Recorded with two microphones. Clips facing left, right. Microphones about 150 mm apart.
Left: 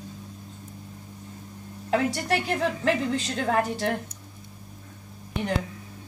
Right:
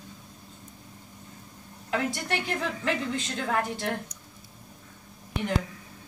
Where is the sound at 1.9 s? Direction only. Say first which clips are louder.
Left 5 dB; 35° left (ahead or behind).